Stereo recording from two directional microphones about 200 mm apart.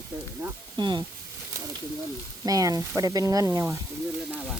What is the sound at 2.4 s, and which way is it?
Speech, 15° right (ahead or behind).